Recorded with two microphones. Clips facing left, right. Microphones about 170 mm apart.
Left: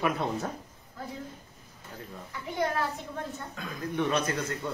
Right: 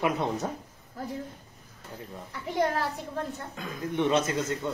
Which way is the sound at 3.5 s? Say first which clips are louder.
Right 2 dB; 20° right (ahead or behind).